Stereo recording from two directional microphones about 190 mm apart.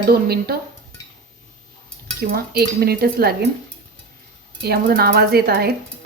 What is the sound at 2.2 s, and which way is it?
Speech, 55° right (ahead or behind).